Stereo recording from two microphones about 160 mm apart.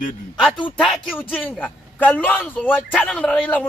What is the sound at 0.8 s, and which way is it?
Speech, 5° right (ahead or behind).